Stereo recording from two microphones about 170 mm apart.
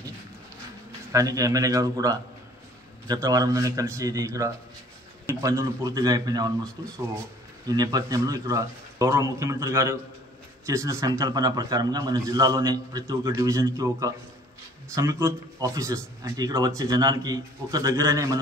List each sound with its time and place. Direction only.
1.1 s a man's voice: 20° right (ahead or behind)